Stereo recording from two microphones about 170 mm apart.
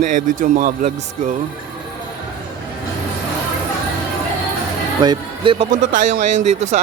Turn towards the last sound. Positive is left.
turn(degrees=-45)  # may be behind; listen again after turning